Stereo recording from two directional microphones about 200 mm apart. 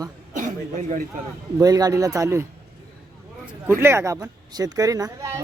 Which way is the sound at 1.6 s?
20° right (ahead or behind).